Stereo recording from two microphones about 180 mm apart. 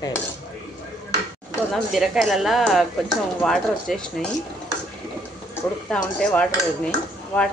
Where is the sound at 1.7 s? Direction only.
Centre (ahead or behind).